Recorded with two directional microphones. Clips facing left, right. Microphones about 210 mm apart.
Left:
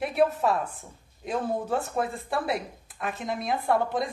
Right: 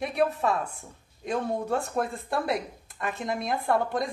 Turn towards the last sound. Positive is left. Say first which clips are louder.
# left 1 dB
turn(degrees=0)  # may be behind; listen again after turning